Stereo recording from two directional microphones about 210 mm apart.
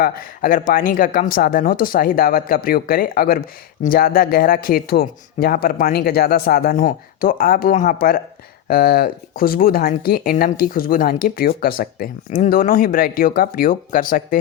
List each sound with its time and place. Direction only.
0.0 s speech: 40° left (ahead or behind)